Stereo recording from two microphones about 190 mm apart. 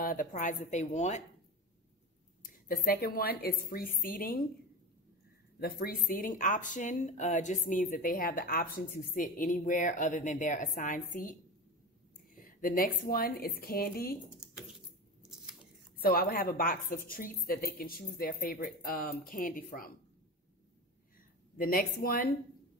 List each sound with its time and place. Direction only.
0.0 s a woman's voice: 45° left (ahead or behind)
2.7 s speech: 50° left (ahead or behind)
5.6 s speech: 50° left (ahead or behind)
12.4 s speech: 45° left (ahead or behind)
15.2 s biting: 5° right (ahead or behind)
16.0 s speech: 50° left (ahead or behind)
21.5 s speech: 50° left (ahead or behind)